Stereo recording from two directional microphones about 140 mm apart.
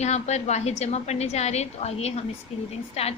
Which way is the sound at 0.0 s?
50° left (ahead or behind).